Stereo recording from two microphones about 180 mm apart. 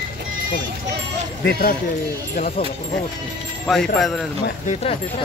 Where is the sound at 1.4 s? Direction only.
55° left (ahead or behind).